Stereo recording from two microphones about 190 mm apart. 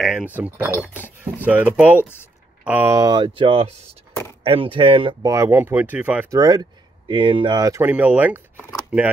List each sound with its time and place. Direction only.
0.0 s speech: 5° right (ahead or behind)
1.4 s speech: 10° right (ahead or behind)
6.3 s speech: 20° right (ahead or behind)